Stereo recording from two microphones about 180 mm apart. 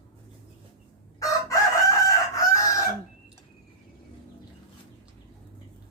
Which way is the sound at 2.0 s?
20° left (ahead or behind).